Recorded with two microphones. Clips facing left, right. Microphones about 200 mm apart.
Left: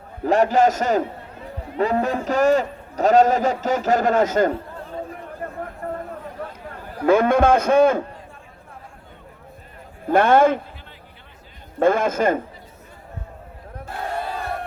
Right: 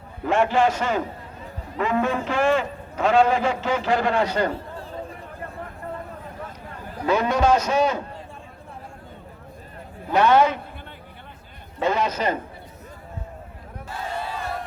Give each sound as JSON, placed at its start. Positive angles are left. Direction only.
{"t": 0.3, "sound": "a man's voice", "side_deg": 40}
{"t": 5.4, "sound": "a sound", "side_deg": 50}
{"t": 7.0, "sound": "a man's voice", "side_deg": 50}
{"t": 10.1, "sound": "a man's voice", "side_deg": 50}
{"t": 11.8, "sound": "a man's voice", "side_deg": 50}
{"t": 13.8, "sound": "battle cry", "side_deg": 60}